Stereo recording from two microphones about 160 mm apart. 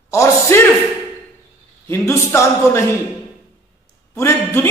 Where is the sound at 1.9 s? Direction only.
15° left (ahead or behind).